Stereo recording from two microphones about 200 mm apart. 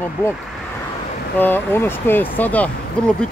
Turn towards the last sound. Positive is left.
turn(degrees=5)  # may be behind; listen again after turning